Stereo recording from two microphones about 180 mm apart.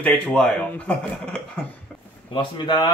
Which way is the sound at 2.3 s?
25° left (ahead or behind).